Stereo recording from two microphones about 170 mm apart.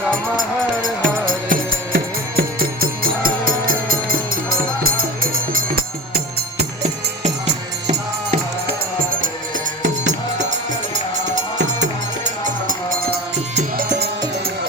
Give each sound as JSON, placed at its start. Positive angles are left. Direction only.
{"t": 0.8, "sound": "music", "side_deg": -55}
{"t": 10.1, "sound": "music", "side_deg": -45}